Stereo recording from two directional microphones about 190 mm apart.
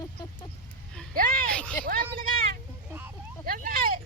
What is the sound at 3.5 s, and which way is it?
Vehicle, 50° right (ahead or behind).